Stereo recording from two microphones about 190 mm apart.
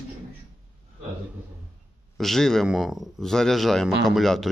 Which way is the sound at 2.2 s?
Centre (ahead or behind).